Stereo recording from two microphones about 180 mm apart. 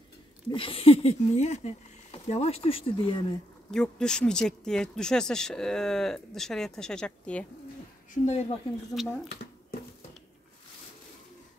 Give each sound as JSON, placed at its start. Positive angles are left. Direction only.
{"t": 0.5, "sound": "speech", "side_deg": 30}
{"t": 3.7, "sound": "speech", "side_deg": 5}
{"t": 8.1, "sound": "speech", "side_deg": 40}
{"t": 8.9, "sound": "speech", "side_deg": 0}